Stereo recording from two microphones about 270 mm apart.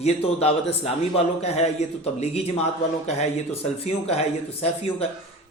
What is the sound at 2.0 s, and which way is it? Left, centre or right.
Speech, left.